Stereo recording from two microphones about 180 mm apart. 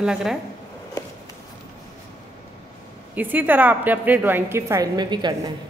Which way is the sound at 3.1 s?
10° right (ahead or behind).